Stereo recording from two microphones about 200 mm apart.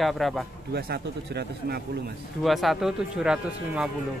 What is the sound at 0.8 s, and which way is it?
A man's voice, 50° right (ahead or behind).